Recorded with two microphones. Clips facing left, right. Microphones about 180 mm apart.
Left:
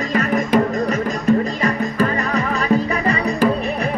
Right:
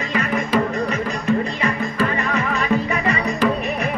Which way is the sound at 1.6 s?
40° left (ahead or behind).